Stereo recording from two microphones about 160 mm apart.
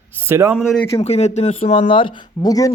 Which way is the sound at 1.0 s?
40° left (ahead or behind).